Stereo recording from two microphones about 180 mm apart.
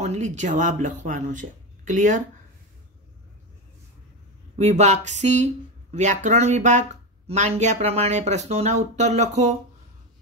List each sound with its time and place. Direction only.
0.0 s speech: 40° right (ahead or behind)
4.6 s speech: 40° right (ahead or behind)